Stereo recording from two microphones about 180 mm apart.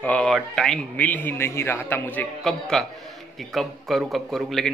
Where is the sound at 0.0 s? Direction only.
5° left (ahead or behind).